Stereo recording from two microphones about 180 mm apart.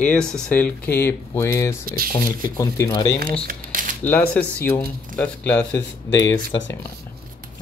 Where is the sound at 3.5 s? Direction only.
50° right (ahead or behind).